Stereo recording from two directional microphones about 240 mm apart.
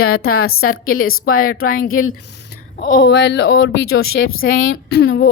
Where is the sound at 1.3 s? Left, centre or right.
Left.